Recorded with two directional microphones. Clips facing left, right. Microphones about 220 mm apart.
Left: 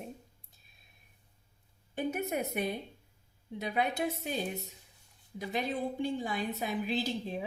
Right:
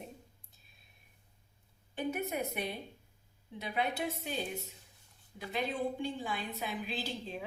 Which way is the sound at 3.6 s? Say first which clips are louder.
Left 3 dB; 45° left (ahead or behind).